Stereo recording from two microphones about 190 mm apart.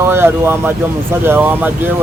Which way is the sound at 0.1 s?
10° right (ahead or behind).